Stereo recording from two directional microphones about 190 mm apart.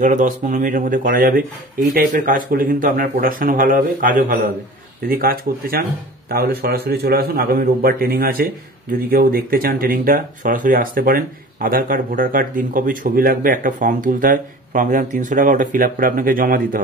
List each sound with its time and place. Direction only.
0.0 s speech: 40° right (ahead or behind)